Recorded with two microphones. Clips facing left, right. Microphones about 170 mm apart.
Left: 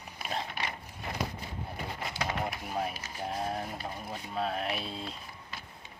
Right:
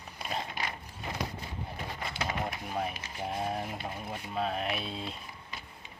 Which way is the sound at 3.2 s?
Centre (ahead or behind).